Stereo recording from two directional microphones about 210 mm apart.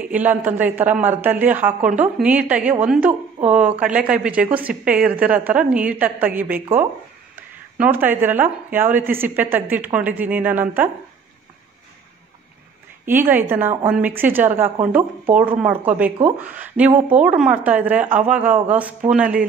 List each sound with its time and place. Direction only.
0.1 s a woman's voice: 10° right (ahead or behind)
13.0 s a woman's voice: 10° right (ahead or behind)